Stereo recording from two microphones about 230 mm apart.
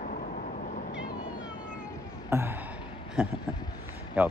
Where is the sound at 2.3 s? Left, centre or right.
Centre.